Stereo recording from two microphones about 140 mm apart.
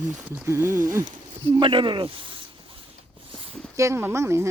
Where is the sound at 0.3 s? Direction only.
15° right (ahead or behind).